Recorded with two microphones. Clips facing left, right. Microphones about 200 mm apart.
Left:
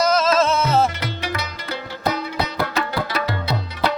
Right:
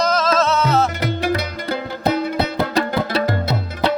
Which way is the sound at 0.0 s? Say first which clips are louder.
Even; 10° left (ahead or behind).